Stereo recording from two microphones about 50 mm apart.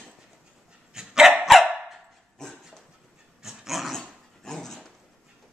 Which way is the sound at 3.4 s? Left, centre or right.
Centre.